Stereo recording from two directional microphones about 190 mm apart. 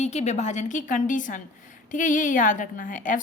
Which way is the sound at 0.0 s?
35° left (ahead or behind).